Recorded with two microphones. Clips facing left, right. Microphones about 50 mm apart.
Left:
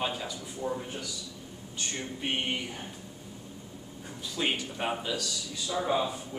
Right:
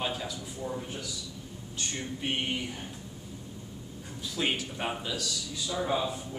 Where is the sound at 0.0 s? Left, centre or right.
Centre.